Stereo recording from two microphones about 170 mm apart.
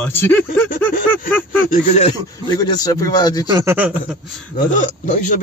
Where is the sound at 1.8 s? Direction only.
45° left (ahead or behind).